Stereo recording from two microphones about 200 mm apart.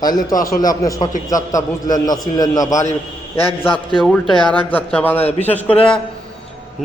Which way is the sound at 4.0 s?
5° left (ahead or behind).